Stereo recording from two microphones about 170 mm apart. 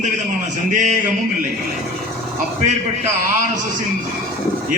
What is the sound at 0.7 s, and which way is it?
Speech, 50° right (ahead or behind).